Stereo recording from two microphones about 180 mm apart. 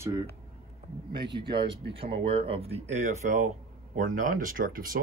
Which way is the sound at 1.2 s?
70° right (ahead or behind).